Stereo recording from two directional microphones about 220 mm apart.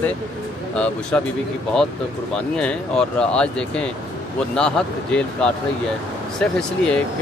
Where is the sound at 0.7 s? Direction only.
5° left (ahead or behind).